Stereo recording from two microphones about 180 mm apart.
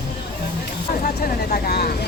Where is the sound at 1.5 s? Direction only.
55° left (ahead or behind).